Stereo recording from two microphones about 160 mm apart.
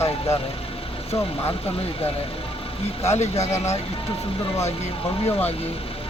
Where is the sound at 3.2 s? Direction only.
40° left (ahead or behind).